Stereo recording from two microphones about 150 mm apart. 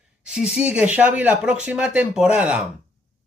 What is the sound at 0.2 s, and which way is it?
Speech, 5° right (ahead or behind).